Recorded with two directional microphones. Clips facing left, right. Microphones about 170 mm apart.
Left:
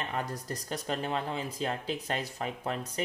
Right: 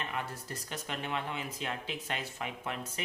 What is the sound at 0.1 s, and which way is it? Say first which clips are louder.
Speech: left 4 dB; 40° left (ahead or behind).